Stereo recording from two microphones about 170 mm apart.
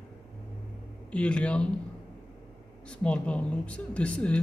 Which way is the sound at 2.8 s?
5° left (ahead or behind).